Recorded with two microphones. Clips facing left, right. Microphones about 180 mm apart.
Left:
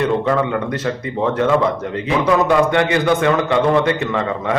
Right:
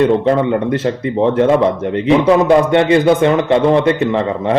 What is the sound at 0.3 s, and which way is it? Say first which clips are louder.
A man's voice: right 5 dB; 30° right (ahead or behind).